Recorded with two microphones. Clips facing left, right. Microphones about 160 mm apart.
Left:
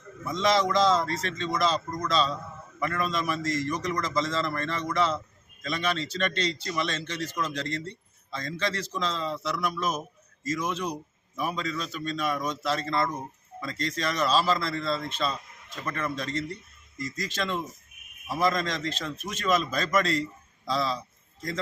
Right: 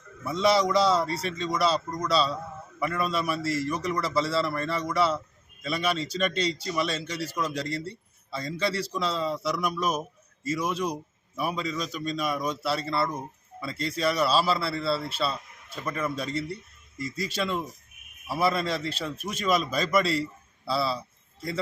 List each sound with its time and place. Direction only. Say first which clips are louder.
0.3 s a man's voice: right 2 dB; 10° right (ahead or behind)